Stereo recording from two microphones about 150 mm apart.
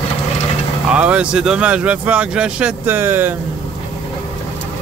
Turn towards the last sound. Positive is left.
turn(degrees=-15)  # may be behind; listen again after turning